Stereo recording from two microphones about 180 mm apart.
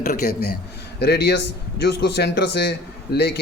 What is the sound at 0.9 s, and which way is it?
A man's voice, 70° left (ahead or behind).